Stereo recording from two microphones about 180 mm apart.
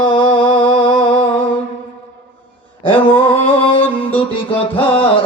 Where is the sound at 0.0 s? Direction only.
30° left (ahead or behind).